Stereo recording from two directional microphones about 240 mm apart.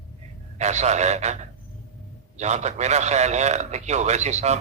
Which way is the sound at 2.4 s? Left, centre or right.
Right.